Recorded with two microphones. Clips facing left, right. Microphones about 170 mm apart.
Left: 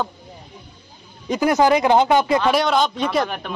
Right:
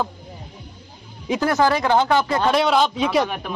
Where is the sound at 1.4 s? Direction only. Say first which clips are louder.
Left 3 dB; 15° left (ahead or behind).